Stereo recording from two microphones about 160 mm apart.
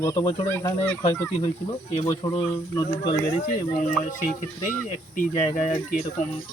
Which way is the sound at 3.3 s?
50° left (ahead or behind).